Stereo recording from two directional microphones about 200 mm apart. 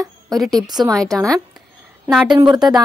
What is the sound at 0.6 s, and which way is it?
Speech, 20° right (ahead or behind).